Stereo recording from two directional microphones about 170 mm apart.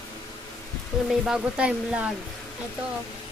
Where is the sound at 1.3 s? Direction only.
5° right (ahead or behind).